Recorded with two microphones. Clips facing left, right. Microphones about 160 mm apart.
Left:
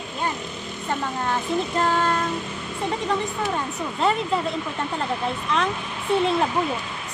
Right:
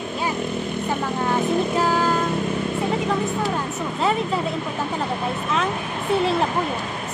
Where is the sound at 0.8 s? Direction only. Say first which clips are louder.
Even; 5° right (ahead or behind).